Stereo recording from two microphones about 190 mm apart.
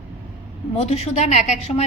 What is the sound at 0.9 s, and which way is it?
Speech, 35° left (ahead or behind).